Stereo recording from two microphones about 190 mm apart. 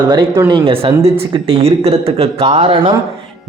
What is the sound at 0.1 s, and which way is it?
Speech, 20° right (ahead or behind).